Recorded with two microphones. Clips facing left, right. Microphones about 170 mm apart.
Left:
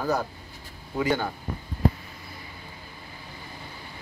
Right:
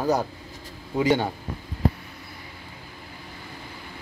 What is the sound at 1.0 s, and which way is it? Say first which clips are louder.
Speech: right 4 dB; 20° right (ahead or behind).